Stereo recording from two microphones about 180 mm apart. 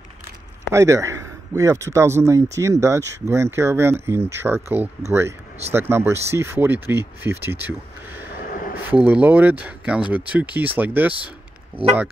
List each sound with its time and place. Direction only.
0.7 s a man's voice: 15° right (ahead or behind)
8.4 s a sound: 50° left (ahead or behind)
8.9 s speech: 10° right (ahead or behind)